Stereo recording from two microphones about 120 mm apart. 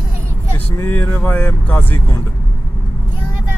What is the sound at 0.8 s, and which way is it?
Speech, 20° left (ahead or behind).